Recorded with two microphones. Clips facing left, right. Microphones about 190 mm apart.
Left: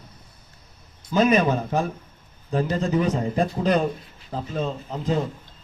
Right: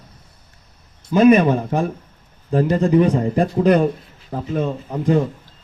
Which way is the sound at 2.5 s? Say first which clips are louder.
Right 7 dB; 55° right (ahead or behind).